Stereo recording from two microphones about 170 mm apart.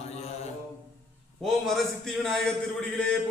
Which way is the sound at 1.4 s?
Centre (ahead or behind).